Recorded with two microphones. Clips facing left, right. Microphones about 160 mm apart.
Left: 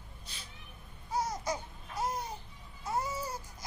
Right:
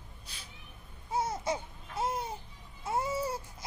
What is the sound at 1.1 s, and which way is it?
Babbling, 25° right (ahead or behind).